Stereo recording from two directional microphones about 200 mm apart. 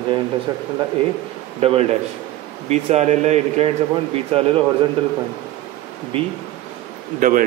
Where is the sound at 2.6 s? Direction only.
35° right (ahead or behind).